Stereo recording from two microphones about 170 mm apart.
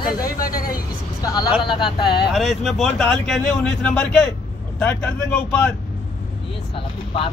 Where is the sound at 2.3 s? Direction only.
Centre (ahead or behind).